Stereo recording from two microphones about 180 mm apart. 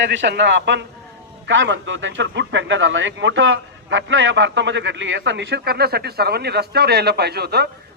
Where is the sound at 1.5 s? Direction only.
90° right.